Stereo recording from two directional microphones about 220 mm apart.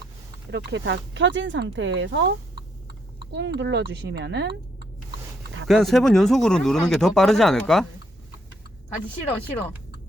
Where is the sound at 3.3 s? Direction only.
50° right (ahead or behind).